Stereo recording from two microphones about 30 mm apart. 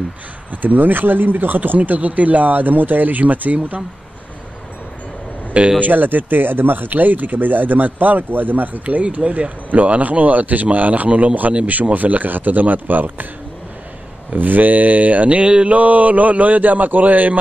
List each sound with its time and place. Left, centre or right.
0.6 s speech: right
1.8 s speech: right
3.5 s a man's voice: right
5.8 s speech: right
9.2 s speech: right
9.7 s a man's voice: right
14.3 s a man's voice: right
15.4 s a sound: right
15.7 s a man's voice: right